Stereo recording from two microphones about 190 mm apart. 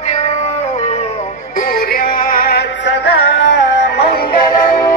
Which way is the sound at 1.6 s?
50° left (ahead or behind).